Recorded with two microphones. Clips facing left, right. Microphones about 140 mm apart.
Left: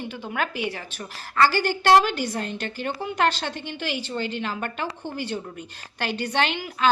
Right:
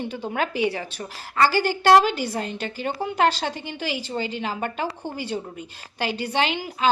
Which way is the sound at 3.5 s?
10° right (ahead or behind).